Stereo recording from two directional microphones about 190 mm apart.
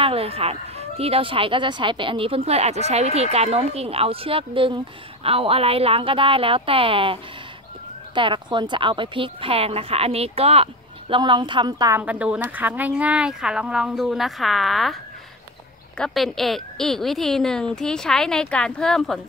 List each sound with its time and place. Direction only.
0.0 s speech: 30° right (ahead or behind)
12.0 s speech: 5° right (ahead or behind)
16.0 s speech: centre (ahead or behind)